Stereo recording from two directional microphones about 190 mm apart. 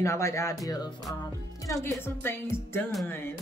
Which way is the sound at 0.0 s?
15° left (ahead or behind).